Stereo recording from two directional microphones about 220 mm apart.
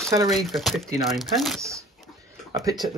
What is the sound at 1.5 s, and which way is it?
Speech, 15° right (ahead or behind).